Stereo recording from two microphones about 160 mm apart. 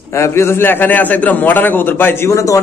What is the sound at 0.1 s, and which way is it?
A man's voice, 15° left (ahead or behind).